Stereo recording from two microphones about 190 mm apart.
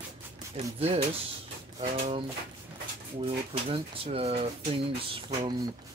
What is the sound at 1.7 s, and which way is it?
Speech, 35° right (ahead or behind).